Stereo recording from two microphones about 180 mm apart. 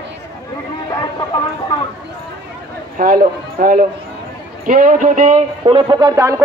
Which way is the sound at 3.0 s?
50° right (ahead or behind).